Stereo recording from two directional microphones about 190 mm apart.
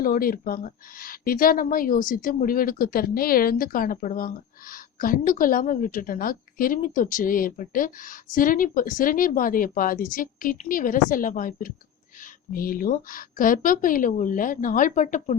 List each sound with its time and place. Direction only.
0.0 s a woman's voice: 50° left (ahead or behind)